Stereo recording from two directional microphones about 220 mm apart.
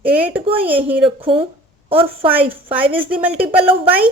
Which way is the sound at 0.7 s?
5° right (ahead or behind).